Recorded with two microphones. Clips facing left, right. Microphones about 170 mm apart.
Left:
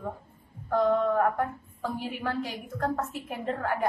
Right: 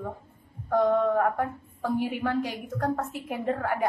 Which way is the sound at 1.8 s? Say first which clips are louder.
Right 6 dB; 15° right (ahead or behind).